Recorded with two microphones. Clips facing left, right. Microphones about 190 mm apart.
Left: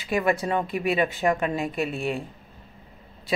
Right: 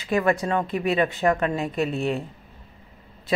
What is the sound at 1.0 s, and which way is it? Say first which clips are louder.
Speech: right 3 dB; 15° left (ahead or behind).